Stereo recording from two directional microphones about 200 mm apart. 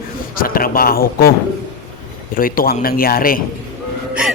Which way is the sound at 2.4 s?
45° left (ahead or behind).